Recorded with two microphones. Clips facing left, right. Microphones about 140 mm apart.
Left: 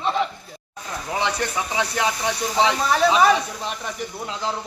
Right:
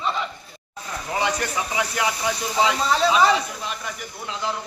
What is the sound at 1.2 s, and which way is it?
Speech, 10° right (ahead or behind).